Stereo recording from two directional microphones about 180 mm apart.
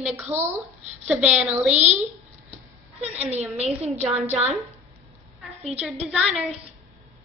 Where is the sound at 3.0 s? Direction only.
35° right (ahead or behind).